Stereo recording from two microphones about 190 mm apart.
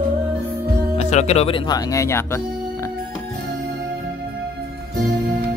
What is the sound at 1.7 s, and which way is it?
Speech, 15° left (ahead or behind).